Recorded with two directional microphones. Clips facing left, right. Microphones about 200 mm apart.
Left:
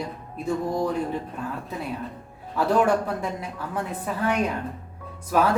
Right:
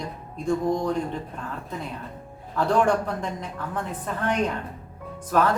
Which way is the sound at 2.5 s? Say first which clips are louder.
Left 1 dB; 5° left (ahead or behind).